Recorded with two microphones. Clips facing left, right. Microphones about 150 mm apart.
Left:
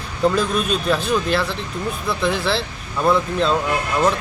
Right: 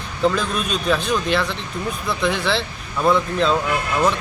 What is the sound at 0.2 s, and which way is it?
Speech, 5° left (ahead or behind).